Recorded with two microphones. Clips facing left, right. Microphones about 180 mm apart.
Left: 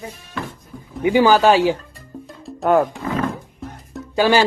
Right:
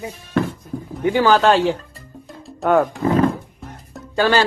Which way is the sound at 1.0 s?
10° left (ahead or behind).